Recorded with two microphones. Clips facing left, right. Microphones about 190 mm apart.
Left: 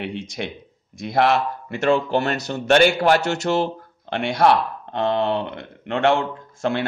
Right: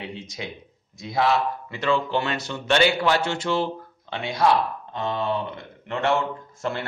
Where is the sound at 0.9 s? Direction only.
70° left (ahead or behind).